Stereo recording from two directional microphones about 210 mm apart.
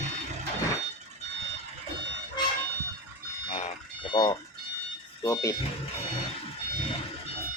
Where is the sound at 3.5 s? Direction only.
25° left (ahead or behind).